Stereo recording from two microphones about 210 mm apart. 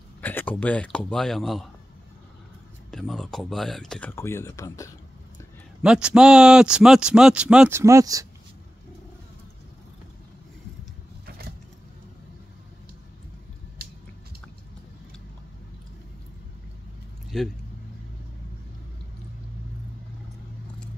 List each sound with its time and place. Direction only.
0.2 s speech: 10° left (ahead or behind)
2.9 s a man's voice: centre (ahead or behind)
5.8 s a man's voice: 5° right (ahead or behind)
11.2 s a sound: 45° right (ahead or behind)
17.3 s speech: centre (ahead or behind)